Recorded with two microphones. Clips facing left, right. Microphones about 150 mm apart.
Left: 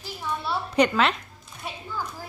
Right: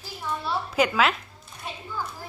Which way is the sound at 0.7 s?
5° right (ahead or behind).